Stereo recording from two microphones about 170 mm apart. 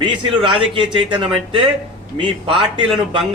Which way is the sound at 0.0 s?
30° right (ahead or behind).